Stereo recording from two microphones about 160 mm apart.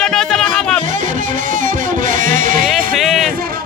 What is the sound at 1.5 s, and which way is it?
Music, 55° right (ahead or behind).